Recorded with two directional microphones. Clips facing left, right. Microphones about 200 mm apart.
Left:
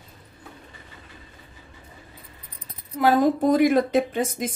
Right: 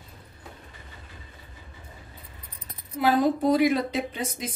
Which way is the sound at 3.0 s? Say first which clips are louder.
Left 3 dB; 45° left (ahead or behind).